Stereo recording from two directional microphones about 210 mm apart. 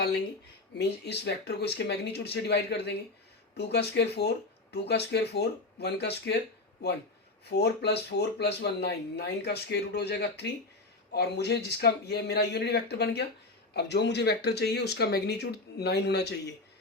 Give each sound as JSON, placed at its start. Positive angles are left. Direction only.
{"t": 0.7, "sound": "speech", "side_deg": 50}
{"t": 7.5, "sound": "speech", "side_deg": 50}